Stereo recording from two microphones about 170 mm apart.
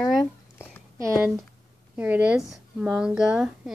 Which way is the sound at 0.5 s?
10° left (ahead or behind).